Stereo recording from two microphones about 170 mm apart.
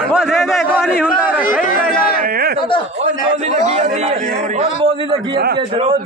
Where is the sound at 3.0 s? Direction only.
45° right (ahead or behind).